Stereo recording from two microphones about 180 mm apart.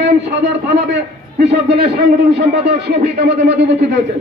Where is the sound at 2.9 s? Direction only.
65° right (ahead or behind).